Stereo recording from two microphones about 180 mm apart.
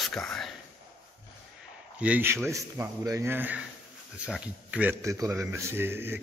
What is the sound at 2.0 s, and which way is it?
A man's voice, 10° right (ahead or behind).